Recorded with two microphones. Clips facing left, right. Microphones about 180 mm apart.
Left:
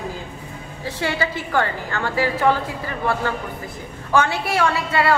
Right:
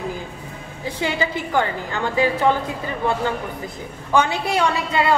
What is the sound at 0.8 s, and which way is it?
A woman's voice, 15° right (ahead or behind).